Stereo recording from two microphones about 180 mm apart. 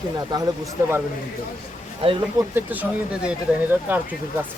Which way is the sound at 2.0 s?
30° right (ahead or behind).